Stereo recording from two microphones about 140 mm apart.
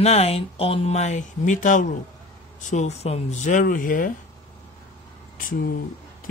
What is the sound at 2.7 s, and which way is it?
Speech, 55° left (ahead or behind).